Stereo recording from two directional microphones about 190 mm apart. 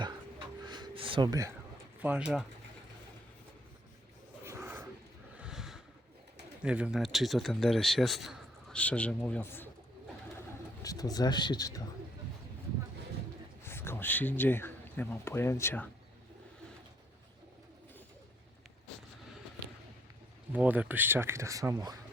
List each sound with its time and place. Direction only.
0.6 s a sound: 20° right (ahead or behind)
2.0 s speech: 5° right (ahead or behind)
4.4 s a sound: 10° right (ahead or behind)
6.6 s speech: 5° right (ahead or behind); by 9.6 s 10° left (ahead or behind)
10.8 s speech: 20° left (ahead or behind)
13.7 s speech: 10° left (ahead or behind)
20.5 s speech: 10° right (ahead or behind)